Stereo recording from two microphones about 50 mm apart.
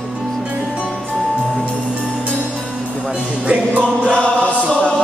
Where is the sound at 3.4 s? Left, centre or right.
Right.